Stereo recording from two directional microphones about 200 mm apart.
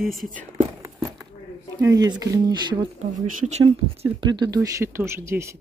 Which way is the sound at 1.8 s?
15° right (ahead or behind).